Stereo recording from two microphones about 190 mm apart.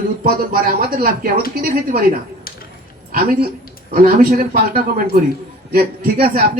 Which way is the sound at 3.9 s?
50° right (ahead or behind).